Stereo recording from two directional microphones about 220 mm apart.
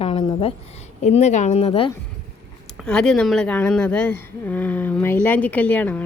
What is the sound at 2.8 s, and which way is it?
Speech, 5° left (ahead or behind).